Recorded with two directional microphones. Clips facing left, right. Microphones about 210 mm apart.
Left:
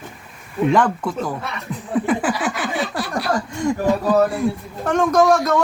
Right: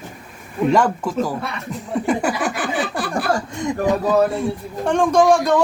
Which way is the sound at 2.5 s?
50° right (ahead or behind).